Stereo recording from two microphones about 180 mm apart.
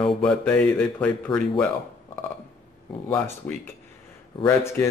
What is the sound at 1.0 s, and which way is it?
Speech, 5° left (ahead or behind).